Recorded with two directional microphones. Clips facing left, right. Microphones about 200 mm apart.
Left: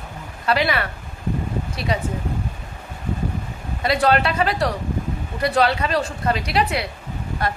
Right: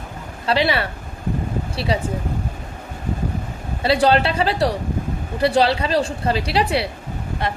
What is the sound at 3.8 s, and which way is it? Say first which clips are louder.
Speech: right 2 dB; 30° right (ahead or behind).